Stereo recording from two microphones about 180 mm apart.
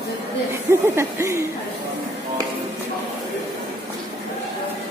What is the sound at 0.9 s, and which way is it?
Speech, 15° right (ahead or behind).